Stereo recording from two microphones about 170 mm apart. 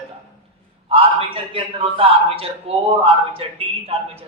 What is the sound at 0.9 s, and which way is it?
A man's voice, 35° right (ahead or behind).